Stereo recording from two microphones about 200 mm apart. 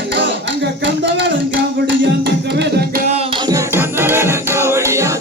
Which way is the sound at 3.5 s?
10° right (ahead or behind).